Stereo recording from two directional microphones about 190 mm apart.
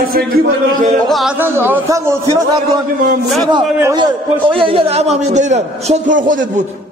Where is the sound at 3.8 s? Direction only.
20° right (ahead or behind); by 6.5 s 45° right (ahead or behind).